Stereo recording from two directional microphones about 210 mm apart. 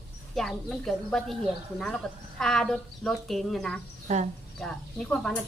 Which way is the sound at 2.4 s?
Centre (ahead or behind).